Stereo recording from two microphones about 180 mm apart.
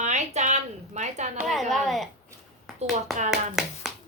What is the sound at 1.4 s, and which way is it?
Speech, centre (ahead or behind).